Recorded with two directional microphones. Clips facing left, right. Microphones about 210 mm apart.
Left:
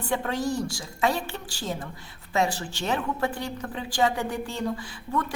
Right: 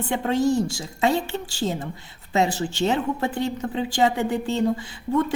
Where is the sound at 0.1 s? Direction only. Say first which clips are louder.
Right 6 dB; 25° right (ahead or behind).